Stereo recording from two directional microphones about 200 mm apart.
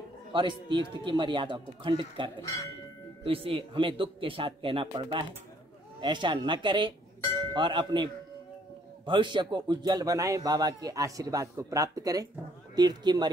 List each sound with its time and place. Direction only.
0.3 s speech: 25° right (ahead or behind)